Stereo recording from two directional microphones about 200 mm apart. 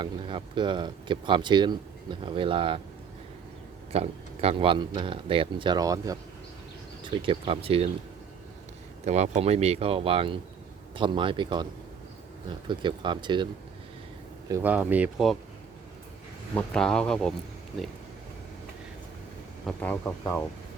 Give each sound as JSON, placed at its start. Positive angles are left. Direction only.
{"t": 0.0, "sound": "speech", "side_deg": -25}
{"t": 3.9, "sound": "speech", "side_deg": -30}
{"t": 9.0, "sound": "speech", "side_deg": -35}
{"t": 14.5, "sound": "speech", "side_deg": -10}
{"t": 16.6, "sound": "speech", "side_deg": 5}
{"t": 19.6, "sound": "speech", "side_deg": 10}